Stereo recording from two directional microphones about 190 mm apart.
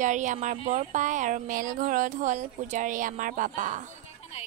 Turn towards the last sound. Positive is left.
turn(degrees=-40)  # may be behind; listen again after turning